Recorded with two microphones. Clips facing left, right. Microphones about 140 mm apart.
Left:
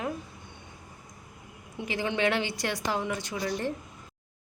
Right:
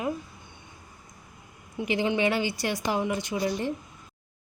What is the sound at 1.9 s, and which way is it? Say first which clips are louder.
Speech: right 5 dB; 20° right (ahead or behind).